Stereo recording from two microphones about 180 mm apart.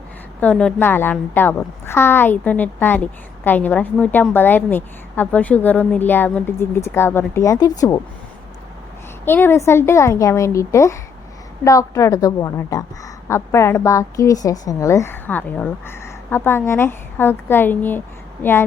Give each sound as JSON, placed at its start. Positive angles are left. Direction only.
{"t": 0.3, "sound": "a woman's voice", "side_deg": 5}
{"t": 9.2, "sound": "a woman's voice", "side_deg": 10}